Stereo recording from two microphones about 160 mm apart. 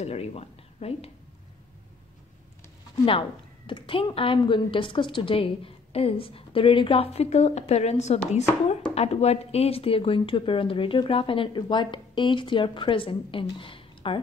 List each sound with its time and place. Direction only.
0.0 s speech: 40° left (ahead or behind)
3.1 s speech: 35° left (ahead or behind)